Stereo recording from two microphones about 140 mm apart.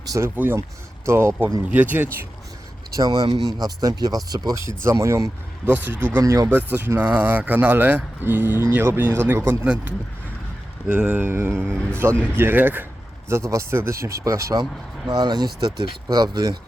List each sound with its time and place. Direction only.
0.1 s speech: 15° right (ahead or behind)
2.9 s speech: 30° right (ahead or behind); by 9.8 s 10° right (ahead or behind)
10.8 s speech: 10° right (ahead or behind)